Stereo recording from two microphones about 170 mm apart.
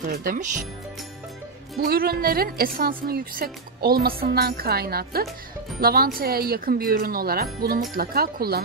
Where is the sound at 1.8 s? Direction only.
65° right (ahead or behind).